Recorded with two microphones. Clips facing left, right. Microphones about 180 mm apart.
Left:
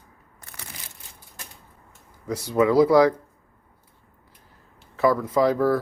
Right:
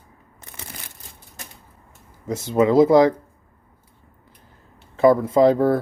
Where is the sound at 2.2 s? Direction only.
20° right (ahead or behind).